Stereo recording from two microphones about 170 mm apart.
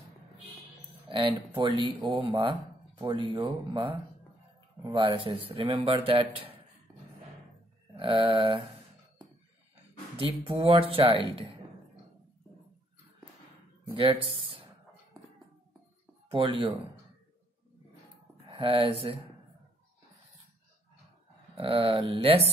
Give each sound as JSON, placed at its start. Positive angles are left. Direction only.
{"t": 1.0, "sound": "a sound", "side_deg": -30}
{"t": 1.6, "sound": "speech", "side_deg": -25}
{"t": 7.9, "sound": "a sound", "side_deg": -30}
{"t": 10.1, "sound": "speech", "side_deg": -30}
{"t": 13.9, "sound": "speech", "side_deg": -30}
{"t": 16.3, "sound": "speech", "side_deg": -30}
{"t": 18.5, "sound": "speech", "side_deg": -30}
{"t": 21.5, "sound": "speech", "side_deg": -35}